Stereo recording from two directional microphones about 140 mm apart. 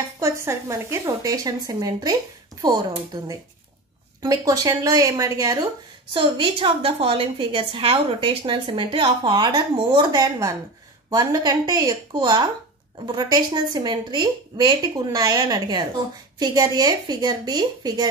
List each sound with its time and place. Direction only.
0.2 s a woman's voice: 20° right (ahead or behind)
4.2 s a woman's voice: 25° right (ahead or behind)